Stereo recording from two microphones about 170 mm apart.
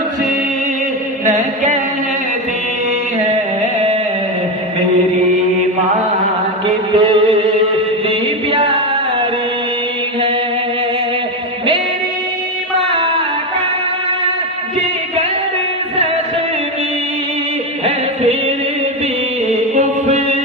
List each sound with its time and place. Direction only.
1.2 s music: 45° right (ahead or behind)
6.7 s mantra: 30° right (ahead or behind)
8.0 s music: 35° right (ahead or behind)
14.8 s music: 35° right (ahead or behind)
17.8 s music: 35° right (ahead or behind)